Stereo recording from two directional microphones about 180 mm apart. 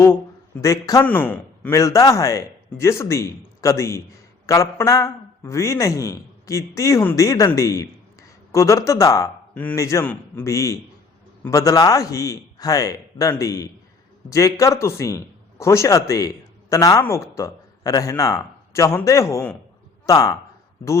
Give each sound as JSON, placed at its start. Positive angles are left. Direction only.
{"t": 0.6, "sound": "a man's voice", "side_deg": 20}